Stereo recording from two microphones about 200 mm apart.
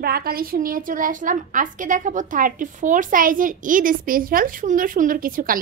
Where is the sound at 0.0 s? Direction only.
50° right (ahead or behind).